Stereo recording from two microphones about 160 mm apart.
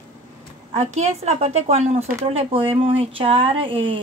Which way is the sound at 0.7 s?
45° right (ahead or behind).